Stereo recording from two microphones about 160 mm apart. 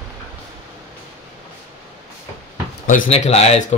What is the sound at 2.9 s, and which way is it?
Speech, 45° left (ahead or behind).